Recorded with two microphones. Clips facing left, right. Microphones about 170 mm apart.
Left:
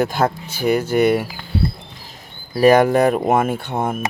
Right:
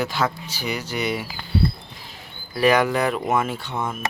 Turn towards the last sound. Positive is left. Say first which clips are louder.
# left 6 dB
turn(degrees=50)  # may be behind; listen again after turning